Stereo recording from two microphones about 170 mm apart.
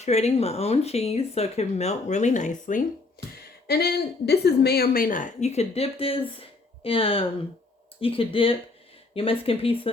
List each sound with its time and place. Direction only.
0.0 s a woman's voice: 40° left (ahead or behind)
3.2 s a sound: 65° left (ahead or behind)
3.7 s a woman's voice: 70° left (ahead or behind); by 9.9 s 35° left (ahead or behind)